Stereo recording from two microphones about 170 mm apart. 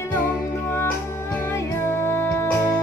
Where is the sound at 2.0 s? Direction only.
15° left (ahead or behind).